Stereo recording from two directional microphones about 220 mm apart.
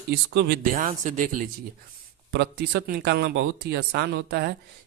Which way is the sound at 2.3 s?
50° right (ahead or behind).